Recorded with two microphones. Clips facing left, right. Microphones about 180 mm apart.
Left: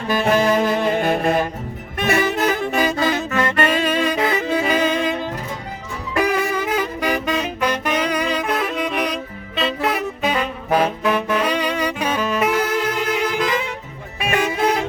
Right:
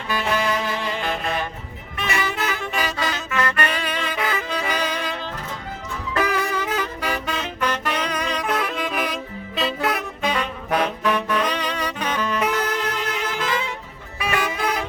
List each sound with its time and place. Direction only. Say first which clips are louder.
0.2 s saxophone: left 7 dB; 45° left (ahead or behind)
2.0 s music: left 7 dB; 50° left (ahead or behind)
4.2 s music: left 6 dB; 25° left (ahead or behind)
14.2 s saxophone: left 4 dB; 25° left (ahead or behind)